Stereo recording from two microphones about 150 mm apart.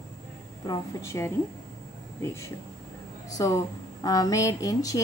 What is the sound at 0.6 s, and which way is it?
Speech, 20° left (ahead or behind).